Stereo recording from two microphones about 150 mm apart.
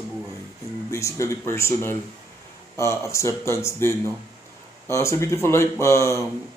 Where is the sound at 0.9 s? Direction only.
20° left (ahead or behind).